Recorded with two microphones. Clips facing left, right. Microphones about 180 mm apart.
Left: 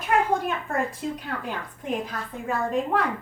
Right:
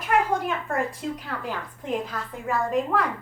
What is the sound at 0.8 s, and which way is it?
A woman's voice, 20° left (ahead or behind).